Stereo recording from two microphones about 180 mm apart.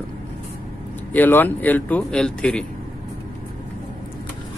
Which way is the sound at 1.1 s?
10° left (ahead or behind).